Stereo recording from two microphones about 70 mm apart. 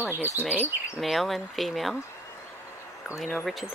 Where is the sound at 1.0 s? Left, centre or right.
Centre.